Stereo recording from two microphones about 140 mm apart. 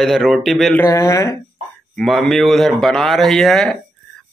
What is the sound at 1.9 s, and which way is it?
A man's voice, centre (ahead or behind).